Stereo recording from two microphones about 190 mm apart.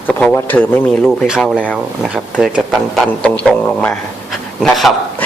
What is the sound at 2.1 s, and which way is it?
Speech, 5° right (ahead or behind).